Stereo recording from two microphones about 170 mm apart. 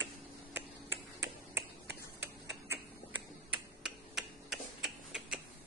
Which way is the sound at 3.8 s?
5° right (ahead or behind).